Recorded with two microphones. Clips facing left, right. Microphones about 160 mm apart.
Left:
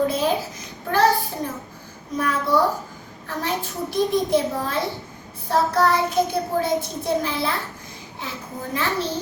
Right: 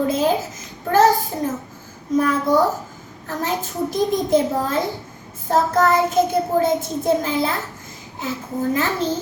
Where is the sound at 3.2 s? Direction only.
45° right (ahead or behind).